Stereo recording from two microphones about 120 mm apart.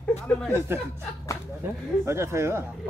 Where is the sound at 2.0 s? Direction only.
20° right (ahead or behind).